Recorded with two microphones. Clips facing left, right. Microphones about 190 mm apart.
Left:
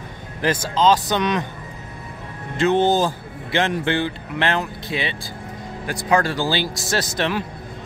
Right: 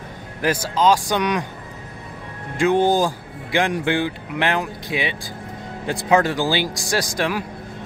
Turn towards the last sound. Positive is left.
turn(degrees=-10)  # may be behind; listen again after turning